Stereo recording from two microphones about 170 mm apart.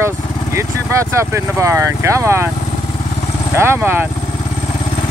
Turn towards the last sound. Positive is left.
turn(degrees=-10)  # may be behind; listen again after turning